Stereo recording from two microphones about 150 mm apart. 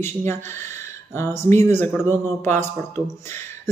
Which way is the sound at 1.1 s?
15° left (ahead or behind).